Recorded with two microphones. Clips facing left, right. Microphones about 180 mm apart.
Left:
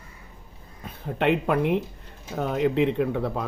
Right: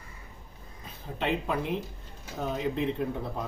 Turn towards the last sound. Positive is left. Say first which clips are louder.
# left 7 dB
turn(degrees=75)  # may be behind; listen again after turning